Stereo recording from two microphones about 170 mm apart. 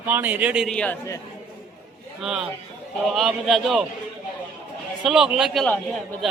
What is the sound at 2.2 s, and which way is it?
A man's voice, centre (ahead or behind).